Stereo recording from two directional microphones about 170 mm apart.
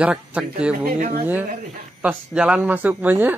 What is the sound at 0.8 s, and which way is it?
Speech, 60° right (ahead or behind).